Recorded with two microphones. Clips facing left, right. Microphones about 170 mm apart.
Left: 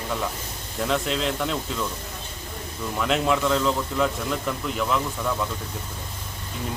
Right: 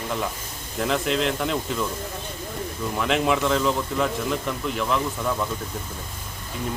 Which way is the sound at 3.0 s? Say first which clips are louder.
Even; centre (ahead or behind).